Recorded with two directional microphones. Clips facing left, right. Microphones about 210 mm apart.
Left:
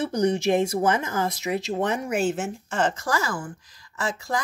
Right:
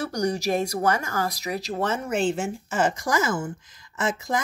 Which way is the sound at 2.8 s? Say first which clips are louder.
Right 1 dB; 15° right (ahead or behind).